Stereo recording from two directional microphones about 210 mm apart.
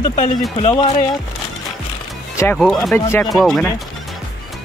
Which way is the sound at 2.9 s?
10° left (ahead or behind).